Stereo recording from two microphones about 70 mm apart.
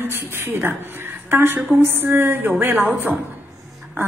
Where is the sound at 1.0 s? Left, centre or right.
Right.